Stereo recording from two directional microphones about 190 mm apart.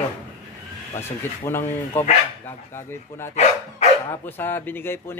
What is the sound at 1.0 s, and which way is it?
Speech, 10° left (ahead or behind).